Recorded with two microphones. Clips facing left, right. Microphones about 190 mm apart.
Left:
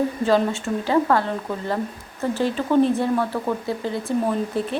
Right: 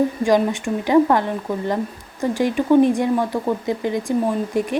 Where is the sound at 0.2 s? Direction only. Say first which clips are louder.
Right 2 dB; 15° right (ahead or behind).